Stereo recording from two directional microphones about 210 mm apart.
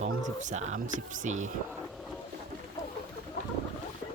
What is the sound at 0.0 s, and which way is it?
Speech, 35° right (ahead or behind).